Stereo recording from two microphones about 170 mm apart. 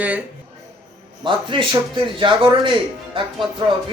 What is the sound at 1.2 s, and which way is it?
Speech, 30° right (ahead or behind).